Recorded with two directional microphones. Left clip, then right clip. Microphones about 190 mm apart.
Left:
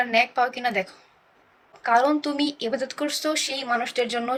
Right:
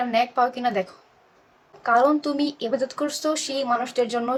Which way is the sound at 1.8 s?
20° right (ahead or behind).